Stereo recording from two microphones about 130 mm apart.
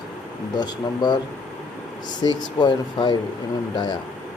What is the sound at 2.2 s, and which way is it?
Speech, 35° left (ahead or behind).